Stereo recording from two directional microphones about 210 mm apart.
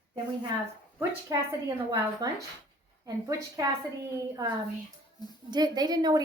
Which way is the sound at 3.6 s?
15° right (ahead or behind).